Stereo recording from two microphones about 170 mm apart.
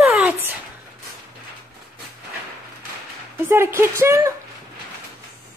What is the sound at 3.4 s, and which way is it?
Speech, 15° right (ahead or behind).